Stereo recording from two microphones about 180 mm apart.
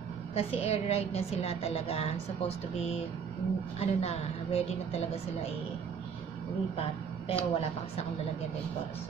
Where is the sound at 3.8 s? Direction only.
35° left (ahead or behind).